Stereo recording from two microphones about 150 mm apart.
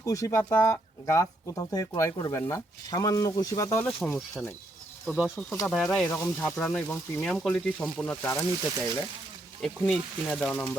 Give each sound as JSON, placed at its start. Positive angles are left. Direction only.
{"t": 0.0, "sound": "speech", "side_deg": 20}
{"t": 5.0, "sound": "speech", "side_deg": 0}
{"t": 9.6, "sound": "speech", "side_deg": 0}